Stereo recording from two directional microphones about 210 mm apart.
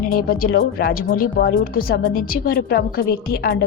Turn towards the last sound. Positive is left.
turn(degrees=45)  # may be behind; listen again after turning